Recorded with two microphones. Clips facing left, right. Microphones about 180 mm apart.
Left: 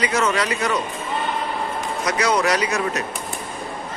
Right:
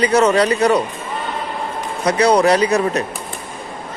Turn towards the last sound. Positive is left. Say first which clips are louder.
# right 7 dB
turn(degrees=-35)  # may be behind; listen again after turning